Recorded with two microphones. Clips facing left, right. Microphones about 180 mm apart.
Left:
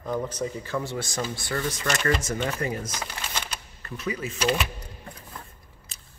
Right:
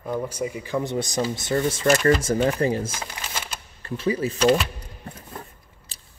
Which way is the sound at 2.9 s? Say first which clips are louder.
Even; 5° right (ahead or behind).